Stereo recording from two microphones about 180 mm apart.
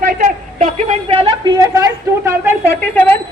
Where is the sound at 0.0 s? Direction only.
50° right (ahead or behind).